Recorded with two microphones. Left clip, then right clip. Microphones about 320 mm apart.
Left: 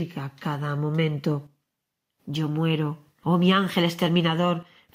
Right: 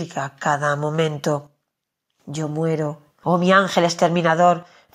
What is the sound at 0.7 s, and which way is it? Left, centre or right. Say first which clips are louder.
Speech: right 8 dB; right.